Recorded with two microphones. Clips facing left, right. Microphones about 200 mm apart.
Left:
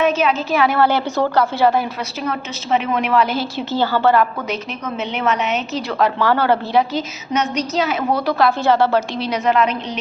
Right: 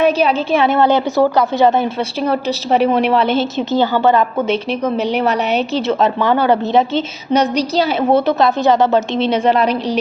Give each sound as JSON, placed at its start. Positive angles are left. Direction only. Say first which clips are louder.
{"t": 0.0, "sound": "a woman's voice", "louder": "right 3 dB", "side_deg": -35}
{"t": 2.2, "sound": "a woman's voice", "louder": "right 8 dB", "side_deg": -35}
{"t": 5.1, "sound": "a woman's voice", "louder": "right 4 dB", "side_deg": -35}
{"t": 5.9, "sound": "a woman's voice", "louder": "right 1 dB", "side_deg": -20}
{"t": 7.3, "sound": "a woman's voice", "louder": "right 5 dB", "side_deg": -35}